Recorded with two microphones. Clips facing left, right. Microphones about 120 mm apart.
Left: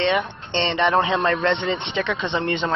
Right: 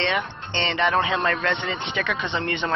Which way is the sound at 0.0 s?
25° left (ahead or behind).